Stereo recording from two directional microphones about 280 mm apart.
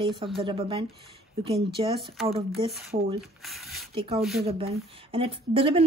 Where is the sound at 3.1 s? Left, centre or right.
Centre.